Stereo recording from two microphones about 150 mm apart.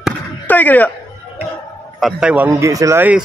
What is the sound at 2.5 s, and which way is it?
Speech, 20° right (ahead or behind).